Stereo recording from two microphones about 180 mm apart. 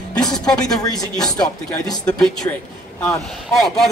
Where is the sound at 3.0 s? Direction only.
Centre (ahead or behind).